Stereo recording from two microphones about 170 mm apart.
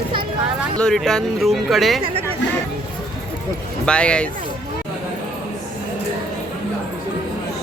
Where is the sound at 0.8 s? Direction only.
5° left (ahead or behind).